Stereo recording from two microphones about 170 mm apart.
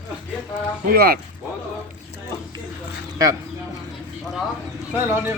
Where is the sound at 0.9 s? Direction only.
65° right (ahead or behind).